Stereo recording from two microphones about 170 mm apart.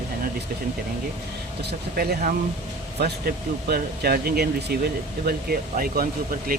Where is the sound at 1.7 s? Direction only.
65° right (ahead or behind).